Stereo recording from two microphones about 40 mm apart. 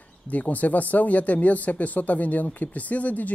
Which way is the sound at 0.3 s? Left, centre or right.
Left.